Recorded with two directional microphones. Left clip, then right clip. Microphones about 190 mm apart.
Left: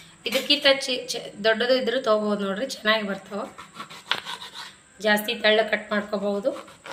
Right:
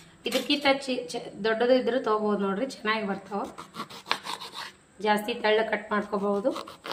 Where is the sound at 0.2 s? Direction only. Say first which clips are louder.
Left 5 dB; 40° right (ahead or behind).